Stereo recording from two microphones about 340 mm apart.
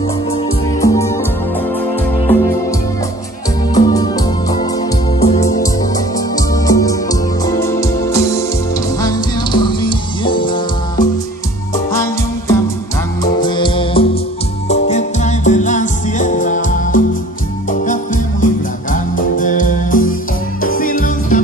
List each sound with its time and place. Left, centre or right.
0.7 s music: centre
3.7 s music: centre